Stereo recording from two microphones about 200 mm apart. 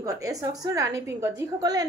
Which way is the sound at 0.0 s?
15° right (ahead or behind).